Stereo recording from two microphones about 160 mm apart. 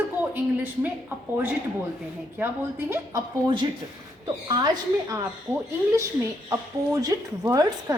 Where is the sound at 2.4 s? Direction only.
15° right (ahead or behind).